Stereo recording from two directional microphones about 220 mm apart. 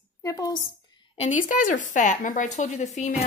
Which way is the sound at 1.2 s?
35° left (ahead or behind).